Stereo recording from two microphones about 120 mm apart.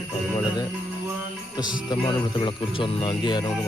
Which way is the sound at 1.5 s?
35° left (ahead or behind).